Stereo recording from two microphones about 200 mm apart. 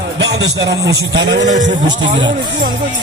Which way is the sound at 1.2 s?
60° right (ahead or behind).